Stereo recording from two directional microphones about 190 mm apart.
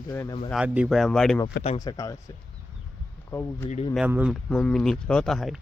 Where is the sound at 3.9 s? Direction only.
5° right (ahead or behind).